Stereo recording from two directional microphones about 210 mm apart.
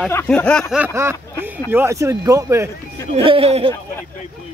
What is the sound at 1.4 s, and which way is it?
Speech, 10° right (ahead or behind).